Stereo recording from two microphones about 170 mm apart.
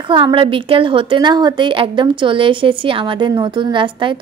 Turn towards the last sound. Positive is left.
turn(degrees=-30)  # may be behind; listen again after turning